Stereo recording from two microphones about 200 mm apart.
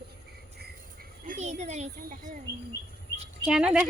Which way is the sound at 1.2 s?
35° right (ahead or behind).